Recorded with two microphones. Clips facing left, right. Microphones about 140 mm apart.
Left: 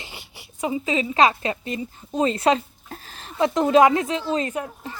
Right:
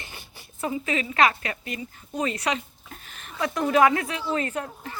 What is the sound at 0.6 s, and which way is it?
A woman's voice, 20° left (ahead or behind).